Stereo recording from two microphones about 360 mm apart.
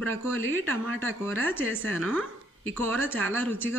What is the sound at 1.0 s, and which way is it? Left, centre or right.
A woman's voice, centre.